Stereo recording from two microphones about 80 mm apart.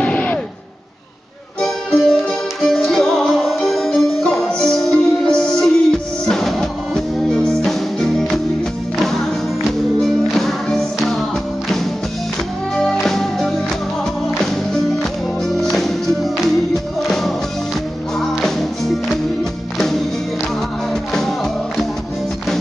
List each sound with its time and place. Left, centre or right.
0.0 s a sound: centre
1.6 s music: centre
13.0 s music: centre
21.1 s music: centre